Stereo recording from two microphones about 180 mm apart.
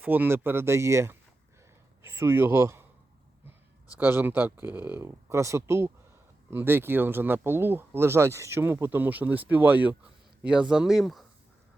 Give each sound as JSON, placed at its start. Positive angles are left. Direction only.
{"t": 0.0, "sound": "speech", "side_deg": -10}
{"t": 3.9, "sound": "speech", "side_deg": -10}